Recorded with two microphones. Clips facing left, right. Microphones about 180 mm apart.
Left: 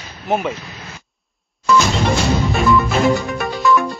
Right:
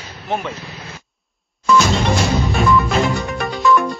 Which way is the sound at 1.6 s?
Centre (ahead or behind).